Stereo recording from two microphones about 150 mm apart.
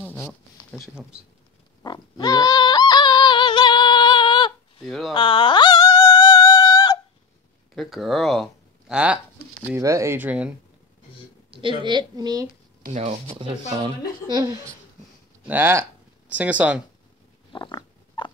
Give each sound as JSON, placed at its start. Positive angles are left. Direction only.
{"t": 1.8, "sound": "pig", "side_deg": 25}
{"t": 4.8, "sound": "speech", "side_deg": 0}
{"t": 5.1, "sound": "a sound", "side_deg": 30}
{"t": 7.7, "sound": "speech", "side_deg": 0}
{"t": 9.7, "sound": "speech", "side_deg": -20}
{"t": 11.5, "sound": "a woman's voice", "side_deg": -30}
{"t": 12.8, "sound": "speech", "side_deg": -50}
{"t": 13.4, "sound": "speech", "side_deg": -30}
{"t": 15.4, "sound": "speech", "side_deg": -15}
{"t": 17.5, "sound": "a sound", "side_deg": 30}